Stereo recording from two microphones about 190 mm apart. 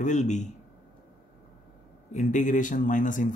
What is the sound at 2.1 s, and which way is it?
Speech, 40° left (ahead or behind).